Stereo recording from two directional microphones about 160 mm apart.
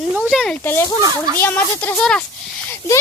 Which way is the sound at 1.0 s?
25° right (ahead or behind).